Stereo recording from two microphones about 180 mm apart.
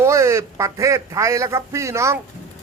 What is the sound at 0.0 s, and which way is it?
A child's voice, 15° right (ahead or behind).